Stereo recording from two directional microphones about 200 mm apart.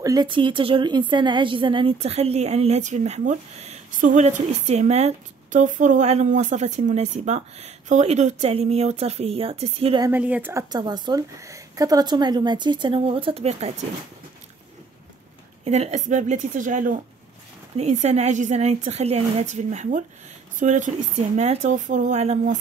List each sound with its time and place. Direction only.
0.0 s a woman's voice: 20° right (ahead or behind)
10.0 s speech: 10° right (ahead or behind); by 13.8 s 30° right (ahead or behind)
15.6 s a woman's voice: 30° right (ahead or behind)